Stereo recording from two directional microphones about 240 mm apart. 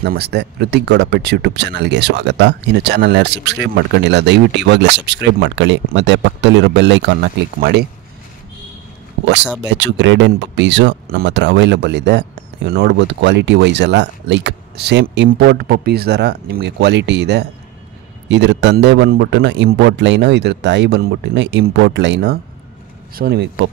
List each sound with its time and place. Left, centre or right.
0.0 s speech: right
9.2 s speech: right